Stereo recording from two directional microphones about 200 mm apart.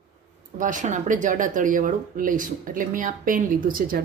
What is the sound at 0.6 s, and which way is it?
A woman's voice, 40° right (ahead or behind).